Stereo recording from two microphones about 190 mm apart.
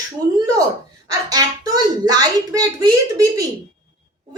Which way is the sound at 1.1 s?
20° right (ahead or behind).